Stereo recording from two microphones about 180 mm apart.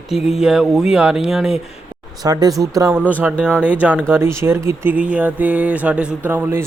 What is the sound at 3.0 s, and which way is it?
Mantra, 10° left (ahead or behind).